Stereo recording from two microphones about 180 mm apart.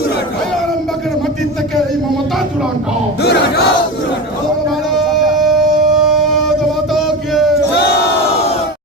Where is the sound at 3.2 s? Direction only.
65° left (ahead or behind).